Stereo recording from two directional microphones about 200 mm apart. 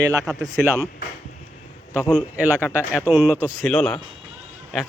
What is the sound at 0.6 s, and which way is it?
Speech, 10° right (ahead or behind).